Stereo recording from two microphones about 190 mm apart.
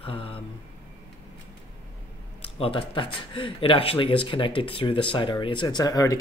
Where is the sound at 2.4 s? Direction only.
30° left (ahead or behind).